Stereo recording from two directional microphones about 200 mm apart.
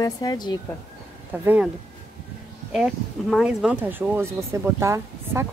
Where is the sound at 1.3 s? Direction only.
10° right (ahead or behind).